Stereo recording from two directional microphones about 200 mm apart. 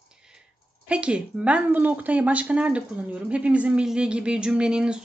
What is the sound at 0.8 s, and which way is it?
Speech, 5° right (ahead or behind).